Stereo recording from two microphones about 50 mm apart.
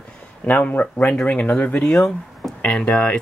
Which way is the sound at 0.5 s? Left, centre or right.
Left.